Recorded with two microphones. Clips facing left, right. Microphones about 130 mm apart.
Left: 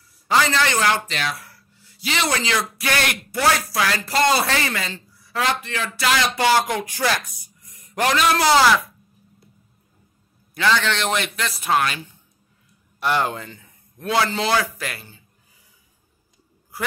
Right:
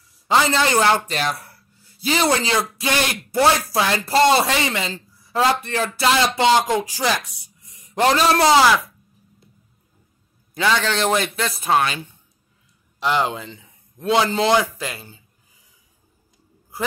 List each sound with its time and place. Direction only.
0.3 s speech: 25° right (ahead or behind)
1.0 s speech: 40° right (ahead or behind); by 4.9 s 20° right (ahead or behind)
4.9 s a man's voice: 35° right (ahead or behind)
10.5 s a man's voice: 20° right (ahead or behind)
10.8 s speech: 35° right (ahead or behind)
13.0 s speech: 15° right (ahead or behind)